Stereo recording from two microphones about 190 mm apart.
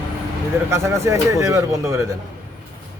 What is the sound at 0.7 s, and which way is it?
Speech, 15° right (ahead or behind).